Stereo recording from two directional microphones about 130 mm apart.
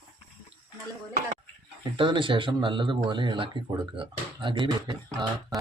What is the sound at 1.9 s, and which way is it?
Speech, 40° right (ahead or behind).